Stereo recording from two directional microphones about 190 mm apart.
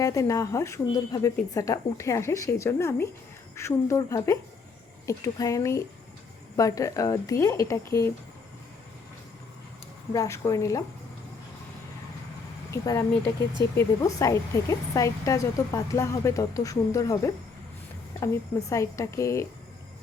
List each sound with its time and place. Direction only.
0.0 s speech: 15° left (ahead or behind)
10.1 s speech: 15° left (ahead or behind)
12.7 s speech: 15° left (ahead or behind)
18.7 s speech: 15° left (ahead or behind)